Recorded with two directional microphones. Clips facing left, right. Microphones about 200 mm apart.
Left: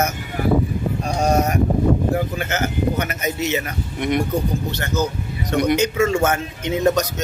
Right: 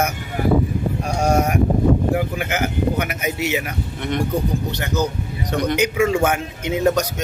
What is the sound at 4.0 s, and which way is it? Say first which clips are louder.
Speech: left 4 dB; 15° left (ahead or behind).